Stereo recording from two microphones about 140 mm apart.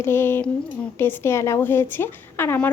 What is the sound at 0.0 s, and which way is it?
A woman's voice, 15° left (ahead or behind).